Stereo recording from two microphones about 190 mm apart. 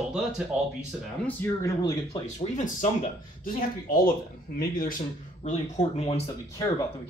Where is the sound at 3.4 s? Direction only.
50° left (ahead or behind).